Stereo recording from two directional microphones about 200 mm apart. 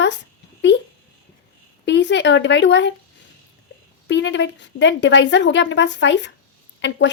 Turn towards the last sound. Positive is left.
turn(degrees=60)  # may be behind; listen again after turning